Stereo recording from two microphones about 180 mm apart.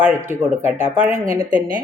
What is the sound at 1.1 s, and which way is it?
Speech, 45° right (ahead or behind).